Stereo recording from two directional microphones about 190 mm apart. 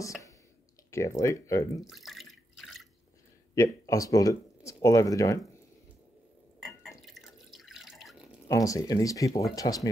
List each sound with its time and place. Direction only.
0.9 s speech: 15° left (ahead or behind)
1.9 s water: centre (ahead or behind)
3.5 s speech: 15° left (ahead or behind)
7.0 s drip: centre (ahead or behind)
8.5 s speech: 15° left (ahead or behind)